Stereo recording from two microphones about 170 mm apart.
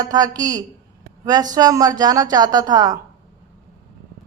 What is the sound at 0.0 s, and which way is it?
Speech, 20° right (ahead or behind).